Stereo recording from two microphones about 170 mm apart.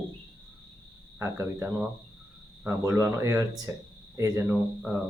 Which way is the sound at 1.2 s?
15° right (ahead or behind).